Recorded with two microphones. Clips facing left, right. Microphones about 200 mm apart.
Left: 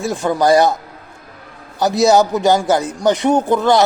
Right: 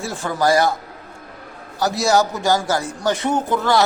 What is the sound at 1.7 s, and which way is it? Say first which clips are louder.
Speech: left 5 dB; 20° left (ahead or behind).